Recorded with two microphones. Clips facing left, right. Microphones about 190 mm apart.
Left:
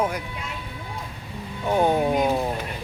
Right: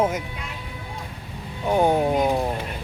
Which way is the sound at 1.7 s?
15° right (ahead or behind).